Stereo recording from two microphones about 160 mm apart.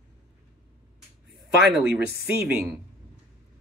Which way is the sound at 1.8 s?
90° right.